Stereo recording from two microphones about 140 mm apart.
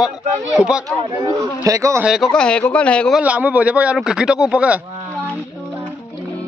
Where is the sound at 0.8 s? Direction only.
25° right (ahead or behind).